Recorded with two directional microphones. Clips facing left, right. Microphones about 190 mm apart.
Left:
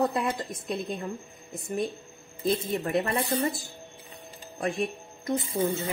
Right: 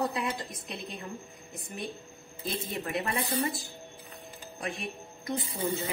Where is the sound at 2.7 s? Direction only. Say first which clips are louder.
Left 6 dB; 50° left (ahead or behind).